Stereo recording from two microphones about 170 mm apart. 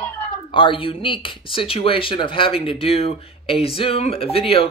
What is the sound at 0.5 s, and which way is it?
Speech, 30° left (ahead or behind).